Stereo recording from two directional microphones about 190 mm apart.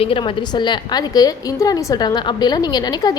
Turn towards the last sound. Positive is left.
turn(degrees=20)  # may be behind; listen again after turning